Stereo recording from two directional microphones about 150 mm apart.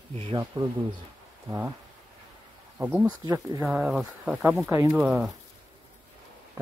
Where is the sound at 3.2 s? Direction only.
25° right (ahead or behind).